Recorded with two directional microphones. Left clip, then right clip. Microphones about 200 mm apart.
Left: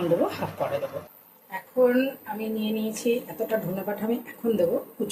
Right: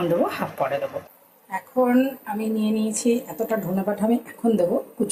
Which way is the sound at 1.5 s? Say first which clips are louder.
Right 1 dB; 15° right (ahead or behind).